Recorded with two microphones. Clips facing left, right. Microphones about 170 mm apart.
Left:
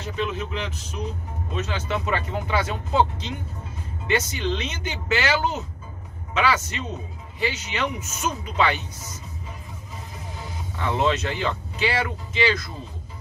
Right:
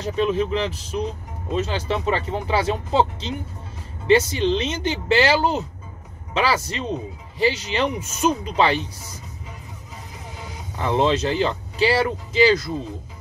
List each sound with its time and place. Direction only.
0.0 s speech: 35° right (ahead or behind)
10.8 s speech: 25° right (ahead or behind)